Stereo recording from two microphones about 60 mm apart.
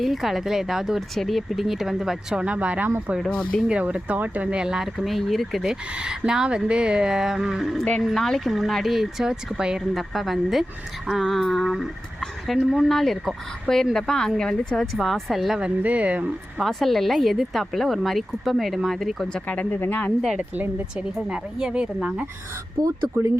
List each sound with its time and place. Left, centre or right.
0.0 s speech: centre
2.4 s speech: right
4.4 s speech: centre
4.9 s speech: centre
9.9 s speech: centre
14.9 s speech: centre
15.6 s speech: right
16.6 s speech: centre
19.3 s speech: left
21.2 s speech: centre
22.8 s speech: right